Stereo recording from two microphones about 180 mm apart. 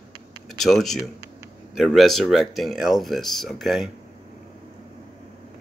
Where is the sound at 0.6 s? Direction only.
Centre (ahead or behind).